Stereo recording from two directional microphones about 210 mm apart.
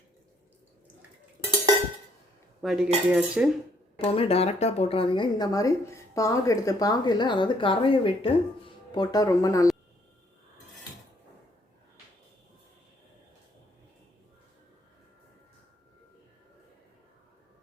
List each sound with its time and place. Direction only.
2.6 s cutlery: centre (ahead or behind)
3.9 s a woman's voice: 25° left (ahead or behind)